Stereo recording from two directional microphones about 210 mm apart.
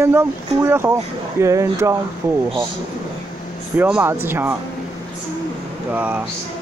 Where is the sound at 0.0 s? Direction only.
10° right (ahead or behind).